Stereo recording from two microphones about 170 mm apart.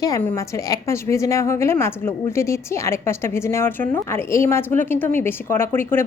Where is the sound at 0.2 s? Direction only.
15° left (ahead or behind).